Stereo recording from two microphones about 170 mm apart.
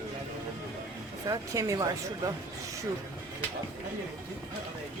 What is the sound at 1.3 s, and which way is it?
Speech, 20° right (ahead or behind).